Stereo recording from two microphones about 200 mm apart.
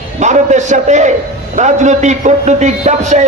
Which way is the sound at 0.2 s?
35° right (ahead or behind).